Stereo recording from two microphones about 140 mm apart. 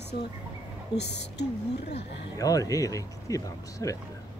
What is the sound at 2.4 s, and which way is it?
Speech, 25° left (ahead or behind).